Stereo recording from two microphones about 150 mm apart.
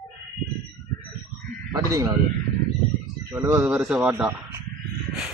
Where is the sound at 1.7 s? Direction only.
20° right (ahead or behind).